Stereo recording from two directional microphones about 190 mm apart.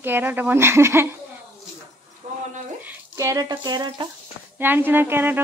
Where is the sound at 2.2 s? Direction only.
35° right (ahead or behind).